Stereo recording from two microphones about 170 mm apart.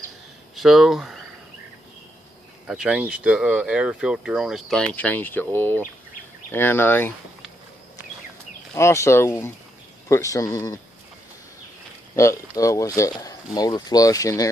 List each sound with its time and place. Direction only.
0.6 s speech: centre (ahead or behind)
2.7 s speech: 5° right (ahead or behind); by 7.2 s 10° left (ahead or behind)
8.7 s speech: 15° left (ahead or behind)
12.2 s speech: 20° left (ahead or behind)